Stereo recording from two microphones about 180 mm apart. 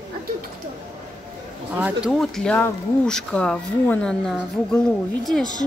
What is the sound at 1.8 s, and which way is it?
Speech, 5° right (ahead or behind).